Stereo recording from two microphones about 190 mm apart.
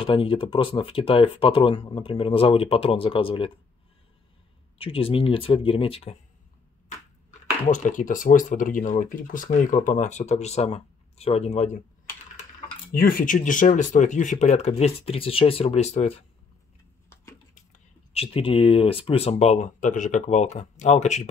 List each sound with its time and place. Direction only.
0.0 s speech: 25° left (ahead or behind)
4.7 s speech: 30° left (ahead or behind)
7.2 s speech: 40° left (ahead or behind)
12.9 s speech: 50° left (ahead or behind)
17.1 s a sound: 15° left (ahead or behind)
17.7 s speech: 30° left (ahead or behind)